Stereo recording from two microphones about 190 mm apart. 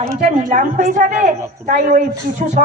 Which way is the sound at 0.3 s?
40° right (ahead or behind).